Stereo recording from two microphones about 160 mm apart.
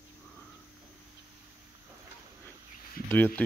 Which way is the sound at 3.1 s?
10° left (ahead or behind).